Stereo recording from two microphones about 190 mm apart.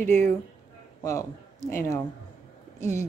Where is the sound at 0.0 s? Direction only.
10° left (ahead or behind).